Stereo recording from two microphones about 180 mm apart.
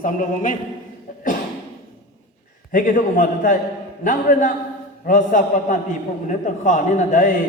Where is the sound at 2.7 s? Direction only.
45° left (ahead or behind).